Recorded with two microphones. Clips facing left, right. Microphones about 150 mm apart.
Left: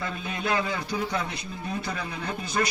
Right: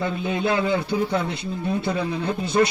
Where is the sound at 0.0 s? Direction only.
25° right (ahead or behind).